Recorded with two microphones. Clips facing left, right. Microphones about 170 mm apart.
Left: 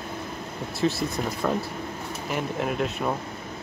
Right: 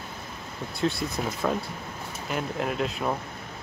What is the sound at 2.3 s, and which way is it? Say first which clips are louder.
Speech: left 1 dB; centre (ahead or behind).